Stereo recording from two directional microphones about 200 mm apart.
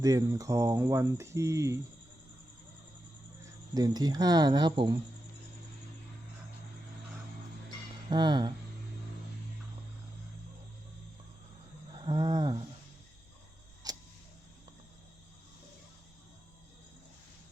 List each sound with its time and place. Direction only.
0.0 s speech: 15° right (ahead or behind)
3.8 s speech: 20° right (ahead or behind)
8.1 s speech: 20° right (ahead or behind)
12.0 s speech: 20° right (ahead or behind)
13.8 s a sound: 20° right (ahead or behind)